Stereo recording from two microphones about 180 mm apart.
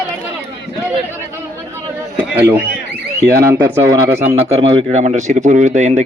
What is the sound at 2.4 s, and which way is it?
Speech, 10° right (ahead or behind).